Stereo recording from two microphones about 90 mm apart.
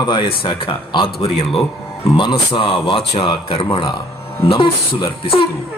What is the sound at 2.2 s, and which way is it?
Speech, 65° left (ahead or behind).